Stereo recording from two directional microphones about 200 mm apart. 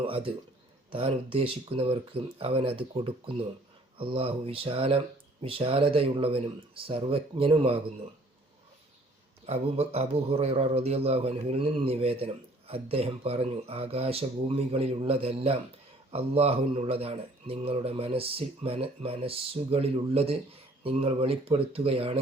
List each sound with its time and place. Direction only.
0.0 s a man's voice: 25° right (ahead or behind)
9.5 s a man's voice: 30° right (ahead or behind)